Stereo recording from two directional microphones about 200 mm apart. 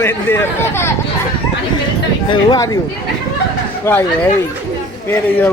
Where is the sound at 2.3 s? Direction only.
20° left (ahead or behind).